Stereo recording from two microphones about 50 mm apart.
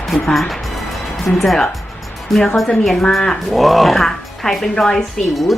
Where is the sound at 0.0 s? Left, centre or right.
Centre.